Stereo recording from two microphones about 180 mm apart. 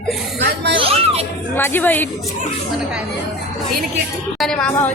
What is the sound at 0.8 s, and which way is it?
Speech, 35° right (ahead or behind).